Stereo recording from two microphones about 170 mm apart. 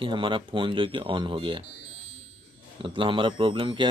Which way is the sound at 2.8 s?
30° right (ahead or behind).